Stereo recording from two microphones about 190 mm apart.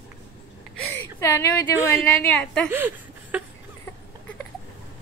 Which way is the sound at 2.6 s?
10° right (ahead or behind).